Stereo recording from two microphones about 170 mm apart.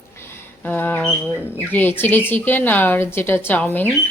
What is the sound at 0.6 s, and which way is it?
Speech, 10° left (ahead or behind).